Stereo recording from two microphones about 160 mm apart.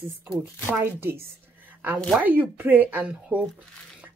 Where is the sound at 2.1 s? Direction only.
10° right (ahead or behind).